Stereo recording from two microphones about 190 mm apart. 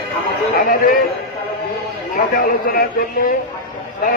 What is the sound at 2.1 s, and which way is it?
A man's voice, 50° left (ahead or behind).